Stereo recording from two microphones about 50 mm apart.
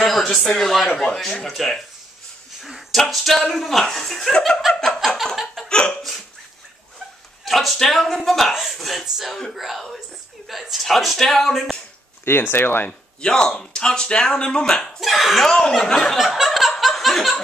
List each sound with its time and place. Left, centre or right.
0.0 s speech: centre
4.7 s a sound: centre
5.7 s speech: centre
7.4 s speech: centre
12.3 s speech: left
13.2 s speech: centre
15.0 s speech: centre
15.4 s speech: centre
16.8 s laughter: centre